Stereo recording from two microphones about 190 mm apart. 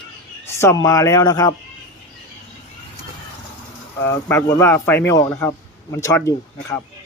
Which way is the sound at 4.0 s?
15° left (ahead or behind).